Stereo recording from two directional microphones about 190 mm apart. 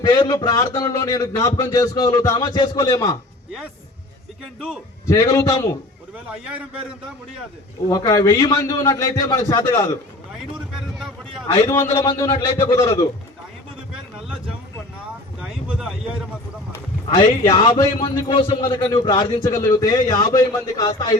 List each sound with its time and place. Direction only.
0.0 s a man's voice: 20° left (ahead or behind)
5.0 s a man's voice: 15° left (ahead or behind)
7.9 s a man's voice: 20° left (ahead or behind)
10.9 s a sound: centre (ahead or behind)
11.5 s a man's voice: 20° left (ahead or behind)
17.4 s a man's voice: 20° left (ahead or behind)